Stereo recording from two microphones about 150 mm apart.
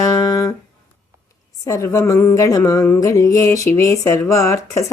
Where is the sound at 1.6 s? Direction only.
20° left (ahead or behind).